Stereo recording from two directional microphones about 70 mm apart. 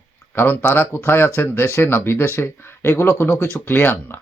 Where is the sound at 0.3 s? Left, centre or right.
Left.